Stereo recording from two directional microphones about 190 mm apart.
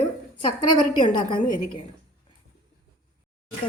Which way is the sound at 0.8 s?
25° left (ahead or behind).